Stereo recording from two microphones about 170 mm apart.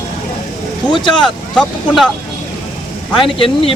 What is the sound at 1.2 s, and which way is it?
Speech, centre (ahead or behind).